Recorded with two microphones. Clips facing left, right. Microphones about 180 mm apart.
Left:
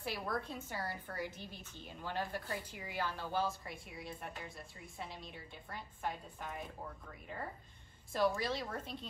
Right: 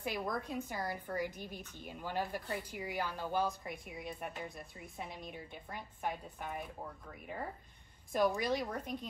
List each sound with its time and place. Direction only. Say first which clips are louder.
0.0 s a woman's voice: right 2 dB; 15° right (ahead or behind)
8.1 s a woman's voice: right 2 dB; 15° right (ahead or behind)